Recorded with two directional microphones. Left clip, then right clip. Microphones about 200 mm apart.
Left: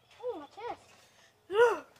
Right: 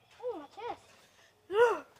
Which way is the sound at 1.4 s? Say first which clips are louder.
Left 1 dB; 10° left (ahead or behind).